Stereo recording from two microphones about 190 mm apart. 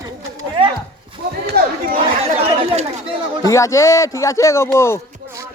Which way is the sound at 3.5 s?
15° left (ahead or behind).